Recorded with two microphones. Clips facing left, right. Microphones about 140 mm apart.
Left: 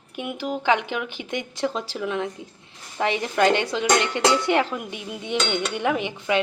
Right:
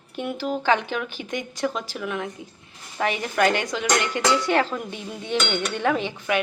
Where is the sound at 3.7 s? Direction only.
25° left (ahead or behind).